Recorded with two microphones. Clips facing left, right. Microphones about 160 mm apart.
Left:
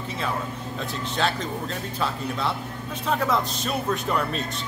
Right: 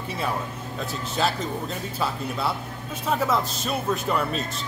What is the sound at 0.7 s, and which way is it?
Speech, 5° right (ahead or behind).